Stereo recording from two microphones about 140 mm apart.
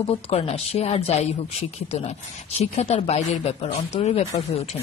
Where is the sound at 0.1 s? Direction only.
45° left (ahead or behind).